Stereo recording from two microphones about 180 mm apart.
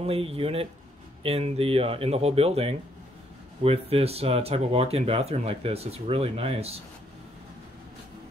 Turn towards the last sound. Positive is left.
turn(degrees=-35)  # may be behind; listen again after turning